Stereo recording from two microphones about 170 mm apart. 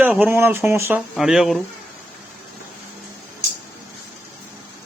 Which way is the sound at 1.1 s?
Centre (ahead or behind).